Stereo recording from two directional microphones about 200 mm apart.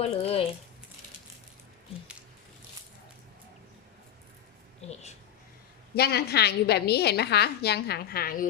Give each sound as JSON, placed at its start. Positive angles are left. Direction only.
{"t": 0.0, "sound": "speech", "side_deg": 30}
{"t": 4.8, "sound": "a sound", "side_deg": 30}
{"t": 5.9, "sound": "a woman's voice", "side_deg": 55}